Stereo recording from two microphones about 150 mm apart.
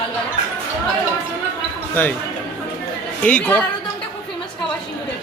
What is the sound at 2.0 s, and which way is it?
Speech, 10° left (ahead or behind).